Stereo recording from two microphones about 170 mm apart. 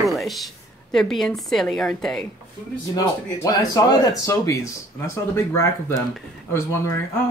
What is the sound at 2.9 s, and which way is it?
Speech, 20° left (ahead or behind).